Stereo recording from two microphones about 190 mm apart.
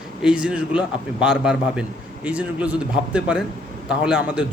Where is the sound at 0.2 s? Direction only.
5° right (ahead or behind).